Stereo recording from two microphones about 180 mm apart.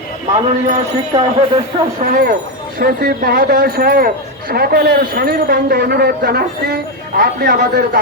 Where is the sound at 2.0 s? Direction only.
50° right (ahead or behind).